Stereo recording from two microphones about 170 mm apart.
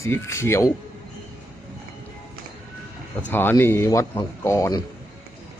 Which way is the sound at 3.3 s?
10° left (ahead or behind).